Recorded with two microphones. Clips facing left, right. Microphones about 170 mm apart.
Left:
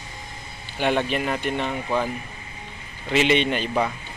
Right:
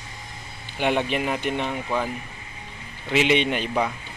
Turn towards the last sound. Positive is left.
turn(degrees=-10)  # may be behind; listen again after turning